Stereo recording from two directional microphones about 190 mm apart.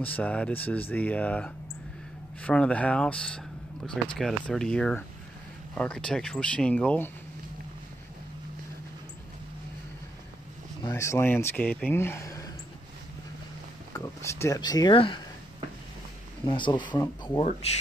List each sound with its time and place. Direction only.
0.0 s speech: 10° left (ahead or behind)
10.8 s speech: 20° left (ahead or behind)
13.9 s speech: 15° left (ahead or behind)
16.4 s speech: 25° left (ahead or behind)